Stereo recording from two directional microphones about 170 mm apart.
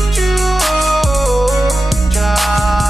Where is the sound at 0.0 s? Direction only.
Centre (ahead or behind).